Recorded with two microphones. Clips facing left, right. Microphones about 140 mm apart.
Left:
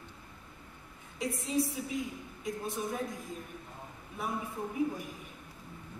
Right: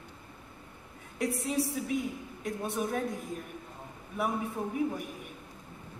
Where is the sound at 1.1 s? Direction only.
65° right (ahead or behind).